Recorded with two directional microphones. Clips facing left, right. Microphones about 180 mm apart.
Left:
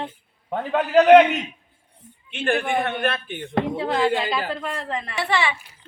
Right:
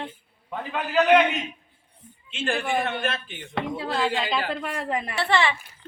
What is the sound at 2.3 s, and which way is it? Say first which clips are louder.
Speech: left 3 dB; 60° left (ahead or behind).